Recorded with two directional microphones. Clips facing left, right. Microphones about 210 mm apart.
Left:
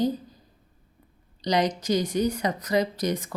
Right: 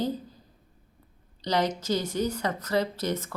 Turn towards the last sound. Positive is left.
turn(degrees=15)  # may be behind; listen again after turning